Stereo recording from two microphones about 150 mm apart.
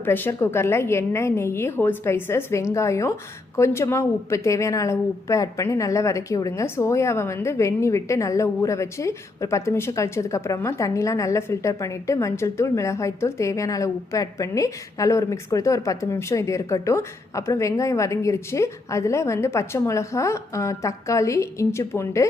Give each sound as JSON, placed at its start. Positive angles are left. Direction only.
{"t": 0.0, "sound": "a woman's voice", "side_deg": 15}